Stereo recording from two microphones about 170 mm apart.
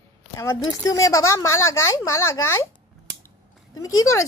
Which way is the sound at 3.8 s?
15° left (ahead or behind).